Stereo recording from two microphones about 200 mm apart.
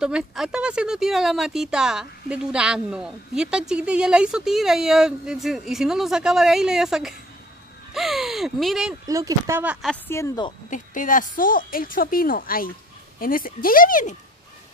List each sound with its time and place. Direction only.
0.0 s speech: 5° right (ahead or behind)
9.0 s speech: 15° right (ahead or behind)
10.0 s speech: 15° left (ahead or behind)
10.7 s a woman's voice: 40° left (ahead or behind)